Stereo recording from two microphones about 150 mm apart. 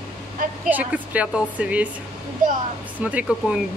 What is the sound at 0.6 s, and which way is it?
A woman's voice, 10° right (ahead or behind).